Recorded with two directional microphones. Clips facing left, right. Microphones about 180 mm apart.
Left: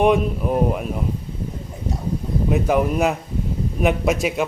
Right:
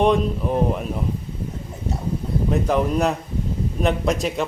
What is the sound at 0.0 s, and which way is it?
Speech, 10° left (ahead or behind).